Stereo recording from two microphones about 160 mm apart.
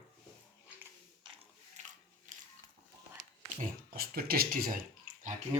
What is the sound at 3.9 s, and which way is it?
Speech, 65° right (ahead or behind).